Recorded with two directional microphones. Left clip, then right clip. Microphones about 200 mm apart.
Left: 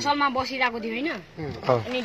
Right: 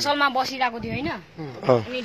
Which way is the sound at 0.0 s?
20° right (ahead or behind).